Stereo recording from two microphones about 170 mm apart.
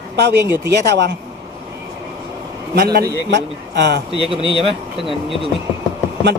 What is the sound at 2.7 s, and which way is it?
Speech, 65° right (ahead or behind).